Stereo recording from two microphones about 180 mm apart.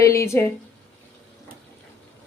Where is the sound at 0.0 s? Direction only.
15° left (ahead or behind).